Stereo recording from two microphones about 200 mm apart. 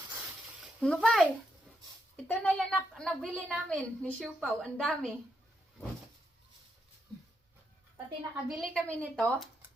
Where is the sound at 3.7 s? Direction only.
5° left (ahead or behind).